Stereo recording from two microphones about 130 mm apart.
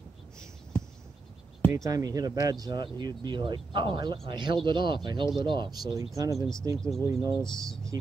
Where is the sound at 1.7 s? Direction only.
25° right (ahead or behind).